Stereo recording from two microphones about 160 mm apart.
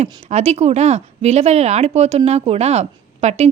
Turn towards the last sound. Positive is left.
turn(degrees=-45)  # may be behind; listen again after turning